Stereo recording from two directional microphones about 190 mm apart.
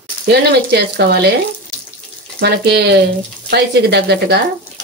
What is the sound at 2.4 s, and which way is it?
Speech, 60° right (ahead or behind).